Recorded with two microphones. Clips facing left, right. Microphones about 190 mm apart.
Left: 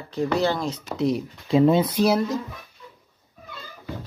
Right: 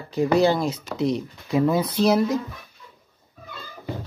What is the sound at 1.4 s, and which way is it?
Speech, 25° left (ahead or behind).